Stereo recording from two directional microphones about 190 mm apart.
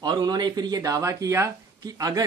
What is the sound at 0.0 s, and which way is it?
Speech, 20° right (ahead or behind).